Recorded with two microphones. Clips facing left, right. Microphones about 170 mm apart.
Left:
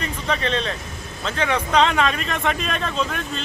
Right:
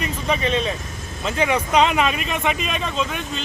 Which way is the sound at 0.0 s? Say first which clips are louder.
Right 2 dB; 10° right (ahead or behind).